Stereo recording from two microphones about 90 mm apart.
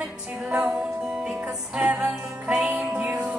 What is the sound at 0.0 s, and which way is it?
Music, 10° right (ahead or behind).